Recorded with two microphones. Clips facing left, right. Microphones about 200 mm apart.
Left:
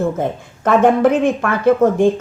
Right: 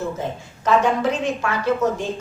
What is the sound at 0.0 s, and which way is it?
Speech, 55° left (ahead or behind).